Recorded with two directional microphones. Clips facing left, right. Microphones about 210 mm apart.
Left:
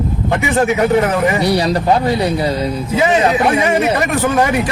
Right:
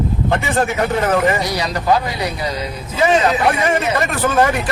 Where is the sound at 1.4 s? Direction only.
30° left (ahead or behind).